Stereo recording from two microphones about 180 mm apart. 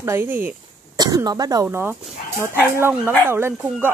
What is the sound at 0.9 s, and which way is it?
Speech, 20° right (ahead or behind).